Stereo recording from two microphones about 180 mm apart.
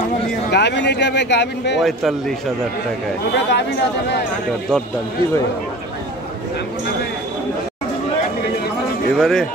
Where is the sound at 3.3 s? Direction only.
70° left (ahead or behind).